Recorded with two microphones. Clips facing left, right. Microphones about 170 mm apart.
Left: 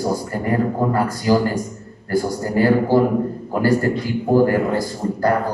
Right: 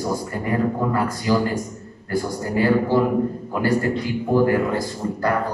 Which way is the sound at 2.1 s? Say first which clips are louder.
Left 3 dB; 40° left (ahead or behind).